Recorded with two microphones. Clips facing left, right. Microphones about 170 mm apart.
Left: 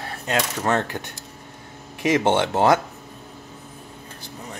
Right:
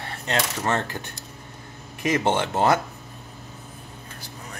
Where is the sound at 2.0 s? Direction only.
90° left.